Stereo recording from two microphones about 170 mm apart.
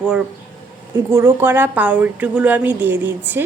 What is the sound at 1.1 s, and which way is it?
A woman's voice, 15° right (ahead or behind).